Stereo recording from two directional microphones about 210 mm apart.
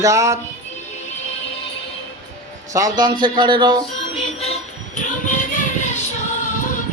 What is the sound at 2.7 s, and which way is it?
Speech, 20° right (ahead or behind).